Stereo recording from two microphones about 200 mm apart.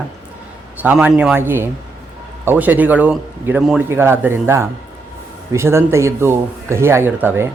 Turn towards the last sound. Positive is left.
turn(degrees=-10)  # may be behind; listen again after turning